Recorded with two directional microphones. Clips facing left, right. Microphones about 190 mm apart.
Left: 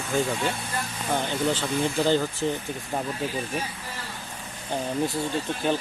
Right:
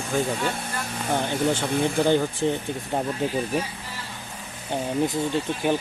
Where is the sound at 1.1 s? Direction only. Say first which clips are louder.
Right 2 dB; 15° right (ahead or behind).